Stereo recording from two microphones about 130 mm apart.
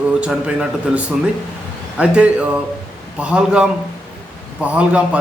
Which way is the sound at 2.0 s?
10° right (ahead or behind).